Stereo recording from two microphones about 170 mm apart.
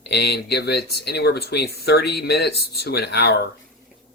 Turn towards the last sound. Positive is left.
turn(degrees=75)  # may be behind; listen again after turning